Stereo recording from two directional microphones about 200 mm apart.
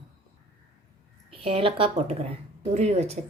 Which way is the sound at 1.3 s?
30° right (ahead or behind).